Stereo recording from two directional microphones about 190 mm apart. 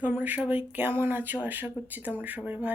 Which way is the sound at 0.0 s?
10° right (ahead or behind).